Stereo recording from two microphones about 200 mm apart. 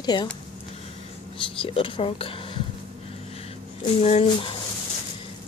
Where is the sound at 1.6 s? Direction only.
25° left (ahead or behind).